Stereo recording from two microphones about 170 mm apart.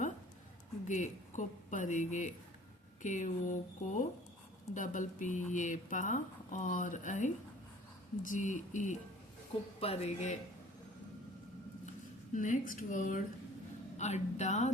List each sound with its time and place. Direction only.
0.9 s speech: 45° left (ahead or behind)
12.3 s speech: 50° left (ahead or behind)